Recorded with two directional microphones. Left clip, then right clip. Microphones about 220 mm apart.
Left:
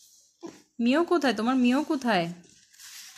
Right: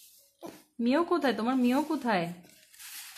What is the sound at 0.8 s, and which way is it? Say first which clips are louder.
Speech: left 3 dB; 15° left (ahead or behind).